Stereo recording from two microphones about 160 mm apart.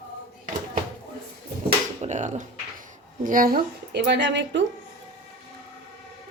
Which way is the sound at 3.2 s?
60° right (ahead or behind).